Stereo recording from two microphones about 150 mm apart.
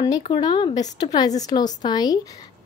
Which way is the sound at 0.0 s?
30° left (ahead or behind).